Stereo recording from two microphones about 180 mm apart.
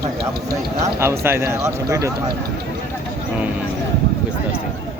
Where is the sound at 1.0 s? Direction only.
15° right (ahead or behind).